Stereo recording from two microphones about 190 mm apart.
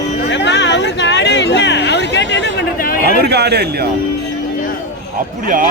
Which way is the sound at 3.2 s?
60° right (ahead or behind).